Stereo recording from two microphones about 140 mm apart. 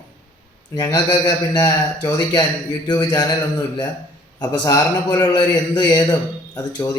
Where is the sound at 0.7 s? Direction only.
35° left (ahead or behind).